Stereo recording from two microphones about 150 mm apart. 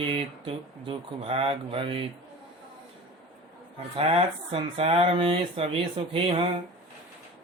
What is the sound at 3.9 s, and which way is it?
Speech, 40° right (ahead or behind).